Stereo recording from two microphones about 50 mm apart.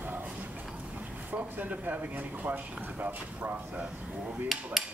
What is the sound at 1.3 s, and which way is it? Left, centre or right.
Speech, right.